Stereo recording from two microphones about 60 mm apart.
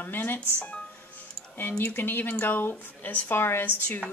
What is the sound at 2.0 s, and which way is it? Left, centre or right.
A woman's voice, left.